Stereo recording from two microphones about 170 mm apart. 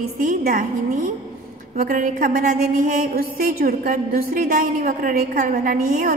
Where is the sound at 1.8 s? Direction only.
60° right (ahead or behind).